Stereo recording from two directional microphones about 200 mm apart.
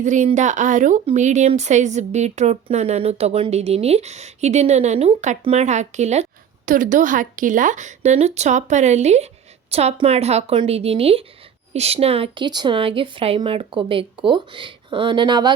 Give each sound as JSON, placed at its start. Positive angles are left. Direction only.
{"t": 0.0, "sound": "speech", "side_deg": -35}